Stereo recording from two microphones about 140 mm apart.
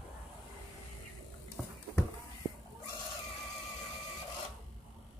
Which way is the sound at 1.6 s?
10° left (ahead or behind).